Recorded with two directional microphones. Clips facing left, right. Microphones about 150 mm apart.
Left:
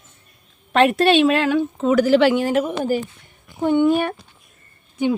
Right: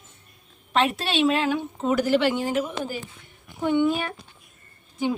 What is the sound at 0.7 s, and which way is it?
A woman's voice, 60° left (ahead or behind).